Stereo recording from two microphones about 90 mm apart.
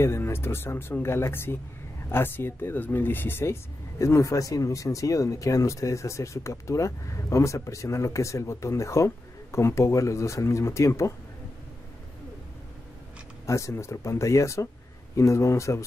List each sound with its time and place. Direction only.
0.0 s speech: 30° left (ahead or behind)
4.0 s speech: 35° left (ahead or behind)
13.5 s speech: 35° left (ahead or behind)